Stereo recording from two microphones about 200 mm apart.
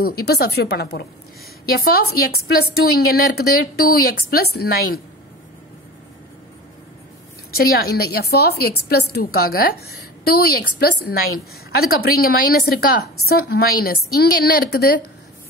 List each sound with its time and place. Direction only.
0.0 s a woman's voice: 50° left (ahead or behind)
7.5 s a woman's voice: 50° left (ahead or behind)